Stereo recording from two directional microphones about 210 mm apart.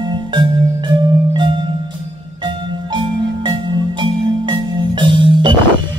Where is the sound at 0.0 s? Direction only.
20° right (ahead or behind).